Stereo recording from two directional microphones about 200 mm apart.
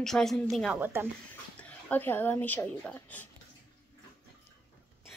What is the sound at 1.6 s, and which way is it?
Speech, 10° left (ahead or behind).